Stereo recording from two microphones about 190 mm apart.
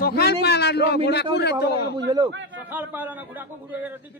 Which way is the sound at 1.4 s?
60° left (ahead or behind).